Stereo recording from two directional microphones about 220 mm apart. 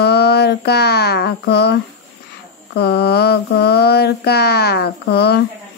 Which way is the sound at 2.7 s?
45° left (ahead or behind).